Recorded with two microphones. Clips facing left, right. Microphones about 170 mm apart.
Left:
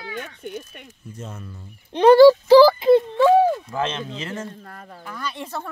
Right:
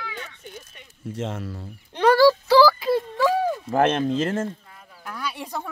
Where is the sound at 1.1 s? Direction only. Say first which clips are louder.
Right 8 dB; 90° right.